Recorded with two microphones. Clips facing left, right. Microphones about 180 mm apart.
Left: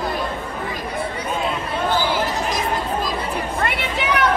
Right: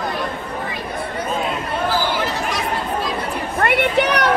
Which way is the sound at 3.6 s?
60° right (ahead or behind).